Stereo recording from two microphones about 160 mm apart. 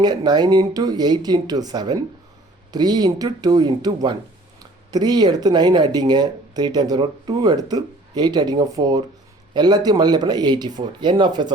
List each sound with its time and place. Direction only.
0.0 s speech: 25° right (ahead or behind)